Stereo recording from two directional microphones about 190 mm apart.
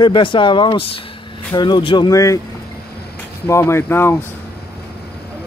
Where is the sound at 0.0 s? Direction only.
25° left (ahead or behind).